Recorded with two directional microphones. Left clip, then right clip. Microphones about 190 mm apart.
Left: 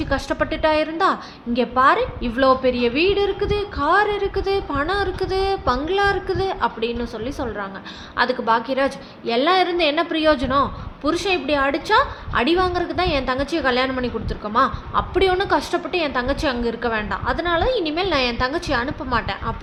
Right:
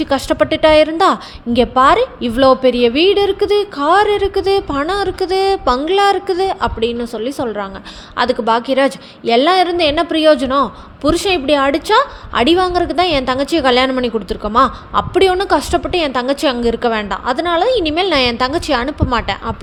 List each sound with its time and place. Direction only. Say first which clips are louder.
0.0 s a woman's voice: right 8 dB; 40° right (ahead or behind)